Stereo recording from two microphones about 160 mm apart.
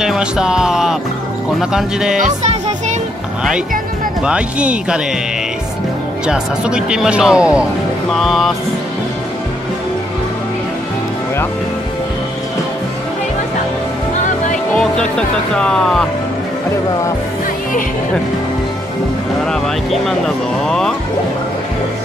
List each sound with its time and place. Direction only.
0.0 s music: 5° right (ahead or behind)
1.6 s speech: 5° right (ahead or behind)
2.1 s music: 50° right (ahead or behind)
4.2 s speech: 5° right (ahead or behind)
6.2 s speech: 5° right (ahead or behind)
14.8 s speech: 5° left (ahead or behind)
19.4 s speech: 5° left (ahead or behind)